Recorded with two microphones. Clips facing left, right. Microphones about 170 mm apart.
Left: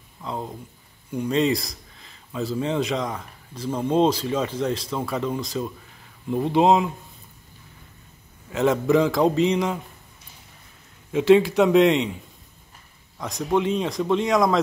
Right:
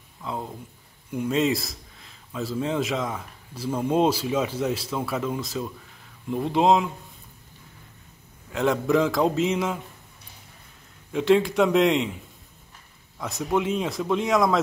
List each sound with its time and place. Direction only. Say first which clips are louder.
0.2 s speech: left 1 dB; centre (ahead or behind)
8.5 s speech: left 2 dB; centre (ahead or behind)
11.1 s speech: left 4 dB; centre (ahead or behind)
13.2 s speech: left 2 dB; 5° right (ahead or behind)